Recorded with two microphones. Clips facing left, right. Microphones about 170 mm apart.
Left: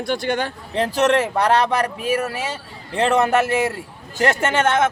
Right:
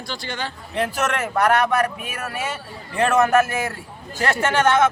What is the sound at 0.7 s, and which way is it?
A man's voice, 35° left (ahead or behind).